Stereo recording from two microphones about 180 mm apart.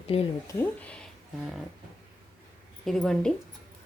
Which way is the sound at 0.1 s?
35° left (ahead or behind).